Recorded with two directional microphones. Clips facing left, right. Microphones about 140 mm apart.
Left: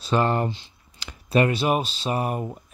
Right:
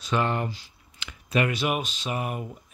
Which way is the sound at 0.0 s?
35° left (ahead or behind).